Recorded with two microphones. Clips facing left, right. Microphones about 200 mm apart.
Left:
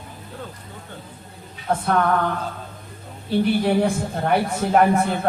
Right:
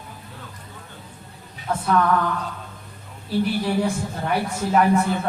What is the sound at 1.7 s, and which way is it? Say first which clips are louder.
Speech: even; 55° left (ahead or behind).